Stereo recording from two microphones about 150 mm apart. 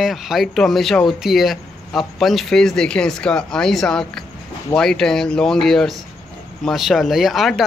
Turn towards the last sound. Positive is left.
turn(degrees=0)  # may be behind; listen again after turning